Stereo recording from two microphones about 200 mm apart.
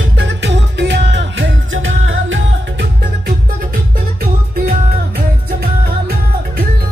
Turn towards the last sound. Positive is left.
turn(degrees=-50)  # may be behind; listen again after turning